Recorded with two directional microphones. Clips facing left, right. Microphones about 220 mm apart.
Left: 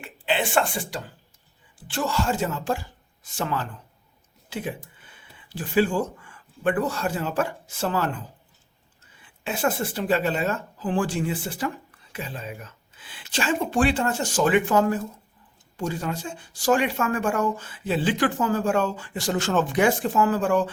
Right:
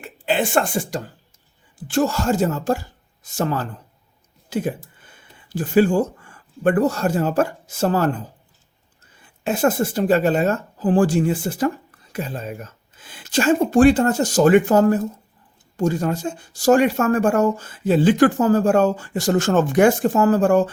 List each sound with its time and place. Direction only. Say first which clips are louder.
0.0 s speech: right 4 dB; 45° right (ahead or behind)
9.2 s speech: right 7 dB; 45° right (ahead or behind)